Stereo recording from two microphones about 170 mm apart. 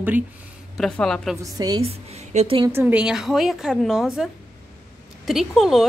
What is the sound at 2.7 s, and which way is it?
A woman's voice, 15° right (ahead or behind).